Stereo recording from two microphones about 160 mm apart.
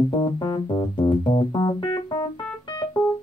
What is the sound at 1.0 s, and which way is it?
Music, 25° left (ahead or behind).